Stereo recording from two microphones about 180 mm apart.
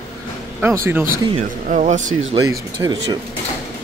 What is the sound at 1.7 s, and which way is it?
Speech, 40° right (ahead or behind).